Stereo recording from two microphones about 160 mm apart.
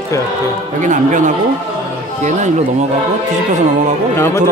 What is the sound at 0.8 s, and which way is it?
Speech, 50° right (ahead or behind).